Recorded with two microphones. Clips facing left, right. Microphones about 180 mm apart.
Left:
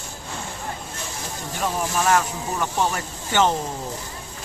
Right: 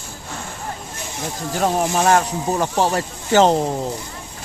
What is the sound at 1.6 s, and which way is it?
Speech, 45° right (ahead or behind).